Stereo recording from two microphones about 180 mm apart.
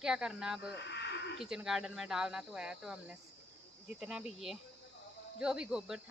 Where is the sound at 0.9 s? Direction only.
70° left (ahead or behind).